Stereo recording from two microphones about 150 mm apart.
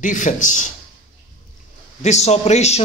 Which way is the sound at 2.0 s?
50° left (ahead or behind).